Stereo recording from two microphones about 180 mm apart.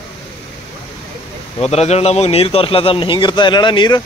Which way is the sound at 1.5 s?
35° left (ahead or behind).